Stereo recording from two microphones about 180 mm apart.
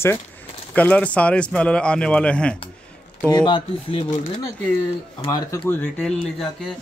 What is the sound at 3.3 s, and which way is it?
Speech, 25° left (ahead or behind).